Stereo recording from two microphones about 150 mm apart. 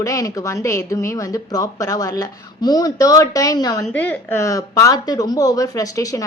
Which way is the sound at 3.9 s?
10° left (ahead or behind).